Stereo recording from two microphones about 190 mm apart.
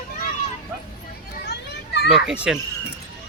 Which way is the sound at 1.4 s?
60° left (ahead or behind).